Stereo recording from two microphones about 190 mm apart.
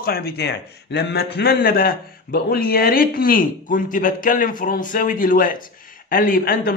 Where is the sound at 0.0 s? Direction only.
55° left (ahead or behind).